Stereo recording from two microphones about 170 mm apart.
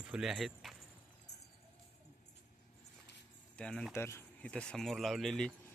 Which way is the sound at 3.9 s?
15° left (ahead or behind).